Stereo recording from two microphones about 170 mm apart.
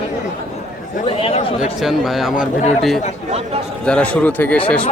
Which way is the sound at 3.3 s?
35° right (ahead or behind).